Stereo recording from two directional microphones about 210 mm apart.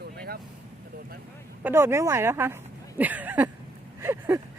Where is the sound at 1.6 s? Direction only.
10° right (ahead or behind).